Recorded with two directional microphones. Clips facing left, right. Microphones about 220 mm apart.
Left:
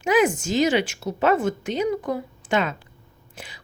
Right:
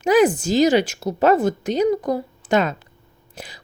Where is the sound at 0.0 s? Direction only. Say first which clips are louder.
Right 4 dB; 35° right (ahead or behind).